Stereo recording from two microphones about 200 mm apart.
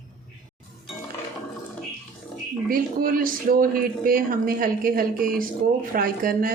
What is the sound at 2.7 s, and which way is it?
Speech, 45° right (ahead or behind).